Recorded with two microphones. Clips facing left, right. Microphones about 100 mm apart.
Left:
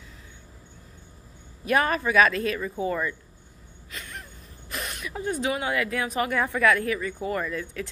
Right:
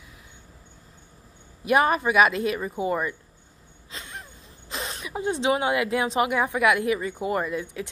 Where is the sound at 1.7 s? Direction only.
15° right (ahead or behind).